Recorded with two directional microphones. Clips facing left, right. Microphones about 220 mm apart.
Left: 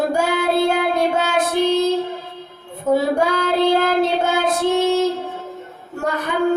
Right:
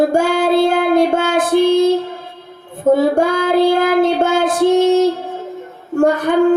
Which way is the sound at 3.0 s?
50° right (ahead or behind).